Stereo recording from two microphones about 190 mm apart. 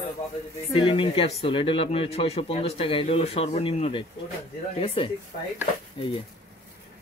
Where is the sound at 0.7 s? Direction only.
25° left (ahead or behind).